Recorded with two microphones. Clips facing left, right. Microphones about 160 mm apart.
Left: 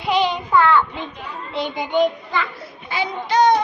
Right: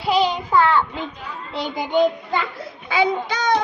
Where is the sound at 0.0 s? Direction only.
35° right (ahead or behind).